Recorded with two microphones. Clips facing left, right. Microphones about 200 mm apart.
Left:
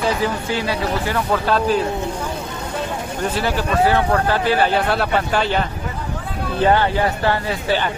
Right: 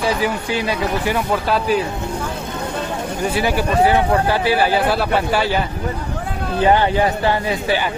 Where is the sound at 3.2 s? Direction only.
10° right (ahead or behind).